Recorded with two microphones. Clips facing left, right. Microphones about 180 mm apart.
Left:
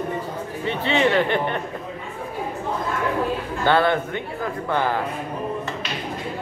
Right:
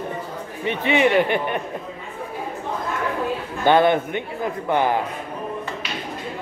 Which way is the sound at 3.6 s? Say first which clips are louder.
Right 3 dB; 20° right (ahead or behind).